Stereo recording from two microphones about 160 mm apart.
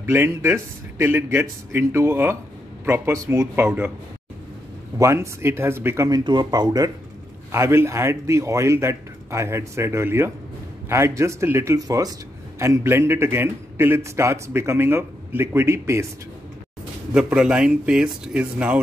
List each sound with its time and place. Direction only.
0.0 s a man's voice: 15° right (ahead or behind)
4.9 s a man's voice: 20° right (ahead or behind)
17.1 s speech: 5° right (ahead or behind)